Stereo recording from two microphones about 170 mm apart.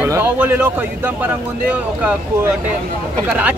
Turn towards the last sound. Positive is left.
turn(degrees=-10)  # may be behind; listen again after turning